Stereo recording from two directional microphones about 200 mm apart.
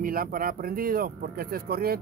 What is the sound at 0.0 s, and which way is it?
Speech, 45° right (ahead or behind).